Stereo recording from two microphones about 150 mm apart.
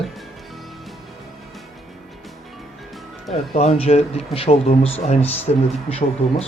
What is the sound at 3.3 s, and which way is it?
A man's voice, 45° left (ahead or behind).